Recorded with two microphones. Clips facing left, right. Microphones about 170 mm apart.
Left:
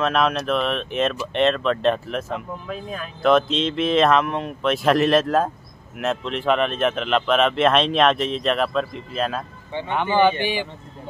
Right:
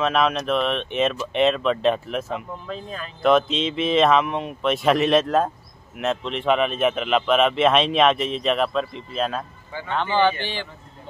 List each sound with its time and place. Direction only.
0.0 s speech: centre (ahead or behind)
9.7 s speech: 25° left (ahead or behind)
9.9 s a man's voice: 15° left (ahead or behind)